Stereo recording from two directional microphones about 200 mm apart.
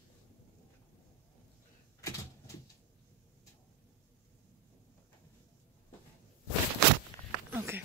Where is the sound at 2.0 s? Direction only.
15° left (ahead or behind).